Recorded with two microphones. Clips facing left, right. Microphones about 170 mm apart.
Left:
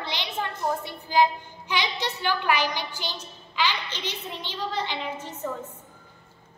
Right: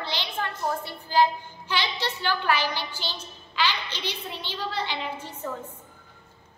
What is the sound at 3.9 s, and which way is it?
A woman's voice, 10° right (ahead or behind).